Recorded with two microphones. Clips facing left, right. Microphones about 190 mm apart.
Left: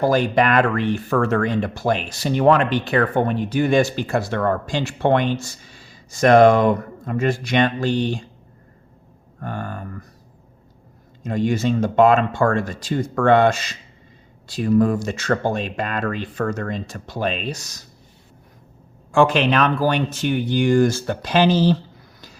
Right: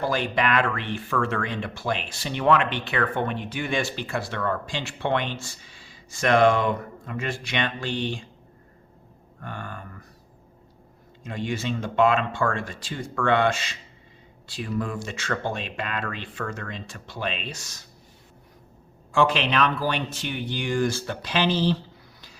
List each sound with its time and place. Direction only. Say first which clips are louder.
0.0 s speech: left 7 dB; 45° left (ahead or behind)
9.4 s a sound: left 7 dB; 40° left (ahead or behind)
11.2 s speech: left 9 dB; 40° left (ahead or behind)
19.1 s speech: left 6 dB; 50° left (ahead or behind)